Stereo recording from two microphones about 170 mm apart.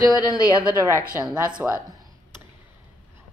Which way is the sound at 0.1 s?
20° left (ahead or behind).